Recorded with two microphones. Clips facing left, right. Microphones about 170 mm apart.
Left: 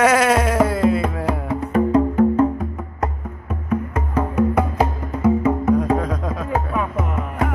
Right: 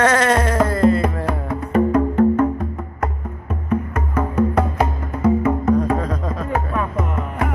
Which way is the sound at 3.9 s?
15° left (ahead or behind).